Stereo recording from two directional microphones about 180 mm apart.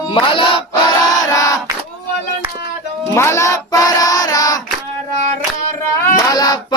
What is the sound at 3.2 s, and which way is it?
Child singing, 15° left (ahead or behind).